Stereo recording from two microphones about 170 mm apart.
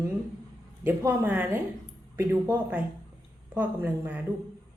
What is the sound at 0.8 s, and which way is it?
A woman's voice, 10° right (ahead or behind).